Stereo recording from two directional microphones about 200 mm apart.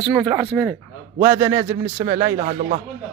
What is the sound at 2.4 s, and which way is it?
Speech, 40° right (ahead or behind).